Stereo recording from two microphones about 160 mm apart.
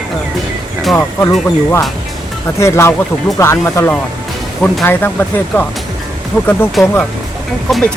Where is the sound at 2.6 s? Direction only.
15° left (ahead or behind).